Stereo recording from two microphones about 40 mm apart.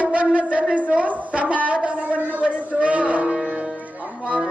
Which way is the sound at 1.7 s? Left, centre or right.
Right.